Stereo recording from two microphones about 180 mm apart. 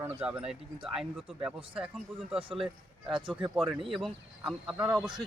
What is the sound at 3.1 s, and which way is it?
Speech, 25° right (ahead or behind).